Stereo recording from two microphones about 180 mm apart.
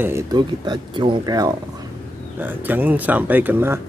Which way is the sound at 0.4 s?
25° right (ahead or behind).